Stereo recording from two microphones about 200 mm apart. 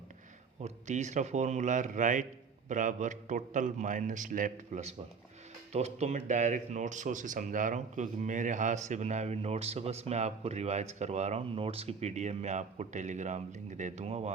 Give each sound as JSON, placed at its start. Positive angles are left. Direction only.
{"t": 0.6, "sound": "speech", "side_deg": -35}